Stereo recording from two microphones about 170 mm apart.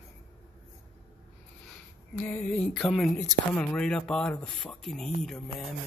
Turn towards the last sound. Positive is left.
turn(degrees=0)  # may be behind; listen again after turning